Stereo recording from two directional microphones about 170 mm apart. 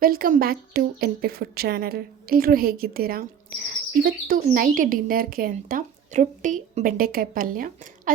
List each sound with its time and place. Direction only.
0.0 s a woman's voice: 60° right (ahead or behind)